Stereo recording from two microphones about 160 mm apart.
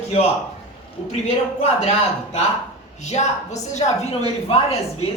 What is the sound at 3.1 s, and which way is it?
A woman's voice, 45° left (ahead or behind).